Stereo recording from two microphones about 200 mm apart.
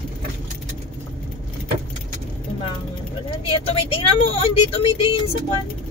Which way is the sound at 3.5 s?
25° left (ahead or behind).